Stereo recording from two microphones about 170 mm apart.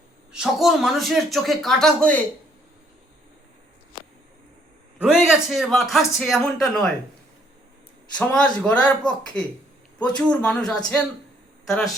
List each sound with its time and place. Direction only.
0.3 s speech: centre (ahead or behind)
4.9 s speech: 5° right (ahead or behind)
8.3 s a man's voice: 5° left (ahead or behind)